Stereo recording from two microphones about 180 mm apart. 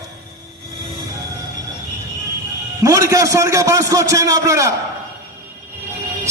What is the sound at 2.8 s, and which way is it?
A man's voice, 20° right (ahead or behind).